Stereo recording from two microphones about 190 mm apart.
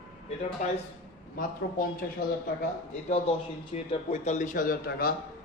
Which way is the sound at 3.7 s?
35° left (ahead or behind).